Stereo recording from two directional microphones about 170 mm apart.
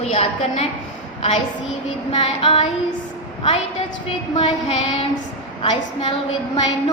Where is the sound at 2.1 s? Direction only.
35° left (ahead or behind).